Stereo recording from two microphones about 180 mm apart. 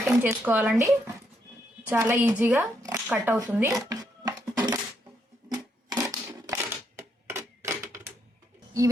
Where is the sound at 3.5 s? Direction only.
15° right (ahead or behind).